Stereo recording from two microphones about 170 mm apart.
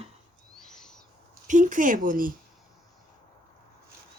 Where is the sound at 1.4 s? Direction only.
50° right (ahead or behind).